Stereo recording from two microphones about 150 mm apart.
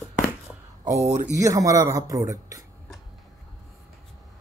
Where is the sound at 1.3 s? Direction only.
20° right (ahead or behind).